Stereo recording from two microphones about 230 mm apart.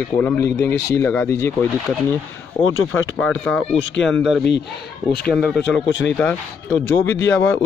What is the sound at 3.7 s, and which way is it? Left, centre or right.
Speech, left.